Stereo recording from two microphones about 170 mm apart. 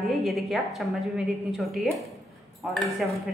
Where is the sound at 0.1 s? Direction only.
Centre (ahead or behind).